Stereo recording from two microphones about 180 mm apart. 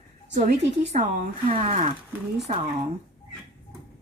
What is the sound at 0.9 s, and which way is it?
A woman's voice, 45° right (ahead or behind).